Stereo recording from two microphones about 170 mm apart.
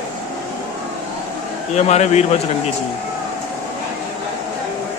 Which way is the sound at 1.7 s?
40° left (ahead or behind).